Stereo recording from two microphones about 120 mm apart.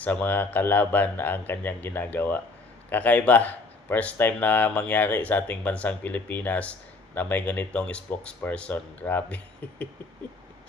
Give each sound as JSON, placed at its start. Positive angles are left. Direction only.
{"t": 0.0, "sound": "speech", "side_deg": 15}